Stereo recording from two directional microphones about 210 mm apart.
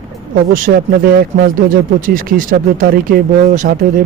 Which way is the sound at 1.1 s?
40° right (ahead or behind).